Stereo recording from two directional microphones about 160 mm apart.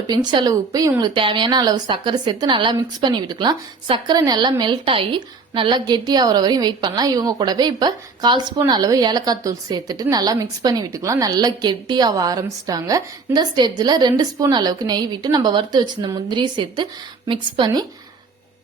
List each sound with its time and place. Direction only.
0.1 s speech: 25° right (ahead or behind)